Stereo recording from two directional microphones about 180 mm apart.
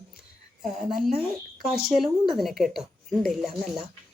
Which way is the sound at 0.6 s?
Centre (ahead or behind).